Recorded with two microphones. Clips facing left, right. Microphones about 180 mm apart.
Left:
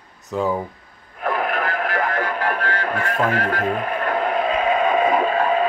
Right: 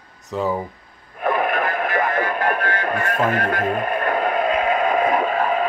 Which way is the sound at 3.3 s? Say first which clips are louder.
Right 1 dB; 50° right (ahead or behind).